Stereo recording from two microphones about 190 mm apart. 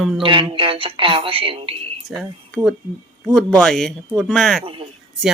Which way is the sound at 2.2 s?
Centre (ahead or behind).